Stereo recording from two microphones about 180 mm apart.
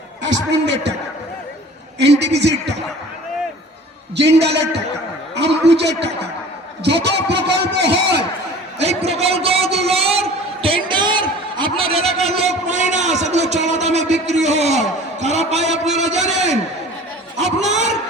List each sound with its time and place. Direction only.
0.2 s a man's voice: 80° right
2.0 s a man's voice: 70° right (ahead or behind)
4.2 s a man's voice: 70° right (ahead or behind)
8.8 s a man's voice: 35° right (ahead or behind)
10.8 s a sound: 25° right (ahead or behind)
17.3 s a sound: 40° right (ahead or behind)